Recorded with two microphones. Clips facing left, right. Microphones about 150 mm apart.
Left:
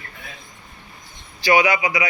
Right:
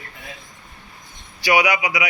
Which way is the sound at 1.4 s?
15° right (ahead or behind).